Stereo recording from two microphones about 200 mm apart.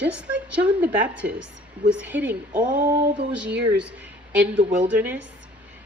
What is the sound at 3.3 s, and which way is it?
A woman's voice, 5° right (ahead or behind).